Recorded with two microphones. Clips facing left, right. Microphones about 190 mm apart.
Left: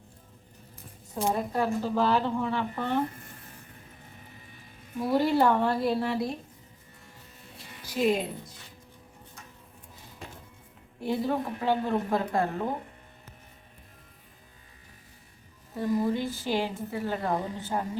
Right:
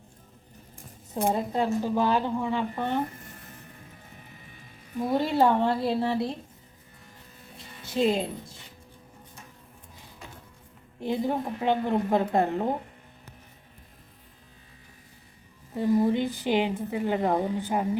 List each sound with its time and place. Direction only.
1.3 s a woman's voice: 20° right (ahead or behind)
5.1 s a woman's voice: 20° right (ahead or behind)
7.5 s music: 25° right (ahead or behind)
11.0 s a woman's voice: 20° right (ahead or behind)
15.7 s a woman's voice: 20° right (ahead or behind)